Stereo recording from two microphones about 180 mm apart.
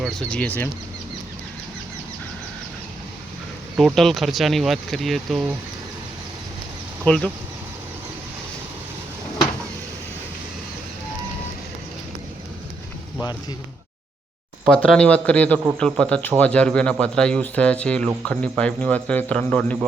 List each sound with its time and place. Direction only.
0.0 s speech: 5° left (ahead or behind)
3.8 s speech: centre (ahead or behind)
7.0 s speech: 5° left (ahead or behind)
14.8 s speech: 5° left (ahead or behind)